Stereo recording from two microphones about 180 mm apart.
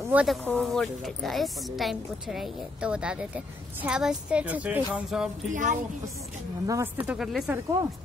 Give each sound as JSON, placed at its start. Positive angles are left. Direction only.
{"t": 0.1, "sound": "speech", "side_deg": -5}
{"t": 5.5, "sound": "a woman's voice", "side_deg": -45}
{"t": 6.6, "sound": "speech", "side_deg": -15}
{"t": 7.2, "sound": "speech", "side_deg": -5}